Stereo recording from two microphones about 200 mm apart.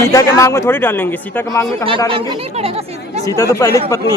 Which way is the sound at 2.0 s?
25° right (ahead or behind).